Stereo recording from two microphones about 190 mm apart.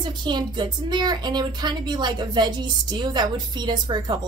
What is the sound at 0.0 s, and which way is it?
A woman's voice, 25° right (ahead or behind).